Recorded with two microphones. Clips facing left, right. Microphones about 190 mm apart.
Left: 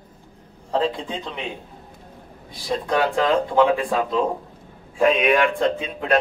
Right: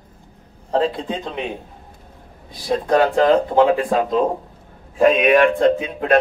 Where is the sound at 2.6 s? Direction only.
45° right (ahead or behind).